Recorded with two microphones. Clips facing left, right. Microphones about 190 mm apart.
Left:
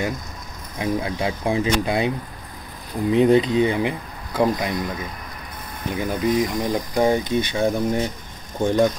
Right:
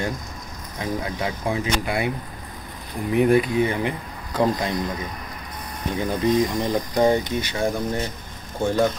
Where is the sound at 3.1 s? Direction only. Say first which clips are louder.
Left 2 dB; 20° left (ahead or behind).